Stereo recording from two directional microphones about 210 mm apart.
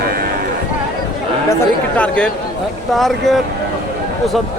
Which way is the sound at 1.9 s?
5° left (ahead or behind).